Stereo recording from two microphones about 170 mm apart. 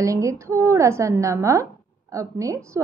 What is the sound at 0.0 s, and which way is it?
Speech, 20° right (ahead or behind).